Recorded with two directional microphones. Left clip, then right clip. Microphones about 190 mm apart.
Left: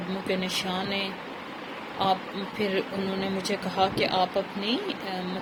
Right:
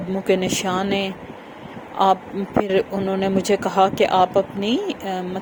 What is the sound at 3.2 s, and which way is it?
Speech, 55° right (ahead or behind).